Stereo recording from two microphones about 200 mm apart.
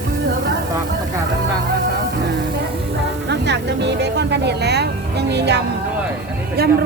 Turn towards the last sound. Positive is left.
turn(degrees=-50)  # may be behind; listen again after turning